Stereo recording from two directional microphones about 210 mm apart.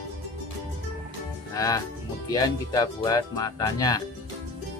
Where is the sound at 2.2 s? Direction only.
15° left (ahead or behind).